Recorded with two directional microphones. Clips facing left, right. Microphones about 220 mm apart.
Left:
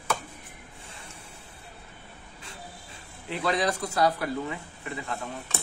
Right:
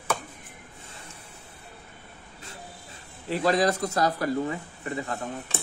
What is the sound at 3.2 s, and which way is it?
Speech, 40° right (ahead or behind).